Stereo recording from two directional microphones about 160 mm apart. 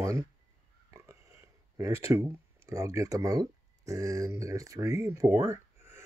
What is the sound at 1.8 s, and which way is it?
Speech, 20° right (ahead or behind).